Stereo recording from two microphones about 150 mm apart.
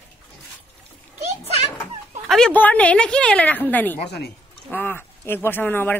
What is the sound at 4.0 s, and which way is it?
Speech, 90° left.